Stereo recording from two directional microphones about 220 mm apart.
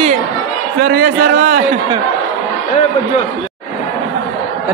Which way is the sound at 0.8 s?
45° right (ahead or behind).